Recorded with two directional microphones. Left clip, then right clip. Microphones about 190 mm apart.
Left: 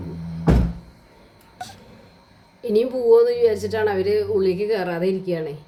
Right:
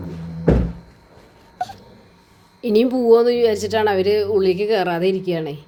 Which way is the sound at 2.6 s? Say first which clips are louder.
Right 3 dB; 40° right (ahead or behind).